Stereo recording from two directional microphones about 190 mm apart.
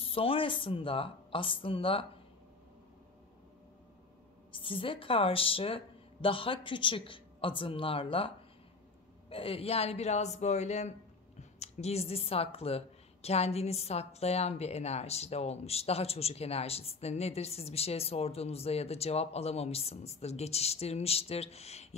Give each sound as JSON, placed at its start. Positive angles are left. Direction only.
{"t": 0.0, "sound": "speech", "side_deg": 30}
{"t": 4.5, "sound": "speech", "side_deg": 25}
{"t": 9.3, "sound": "a man's voice", "side_deg": 30}